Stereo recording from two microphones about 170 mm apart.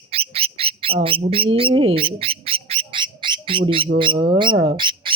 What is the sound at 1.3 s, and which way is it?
Speech, 35° right (ahead or behind).